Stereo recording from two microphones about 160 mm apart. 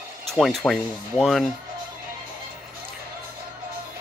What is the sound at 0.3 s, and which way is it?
Speech, centre (ahead or behind).